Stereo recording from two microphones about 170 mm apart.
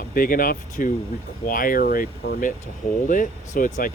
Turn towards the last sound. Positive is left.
turn(degrees=55)  # may be behind; listen again after turning